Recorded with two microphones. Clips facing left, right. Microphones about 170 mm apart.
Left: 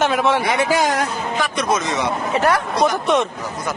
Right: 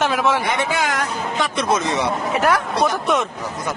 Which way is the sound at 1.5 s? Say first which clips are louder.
Right 1 dB; 25° right (ahead or behind).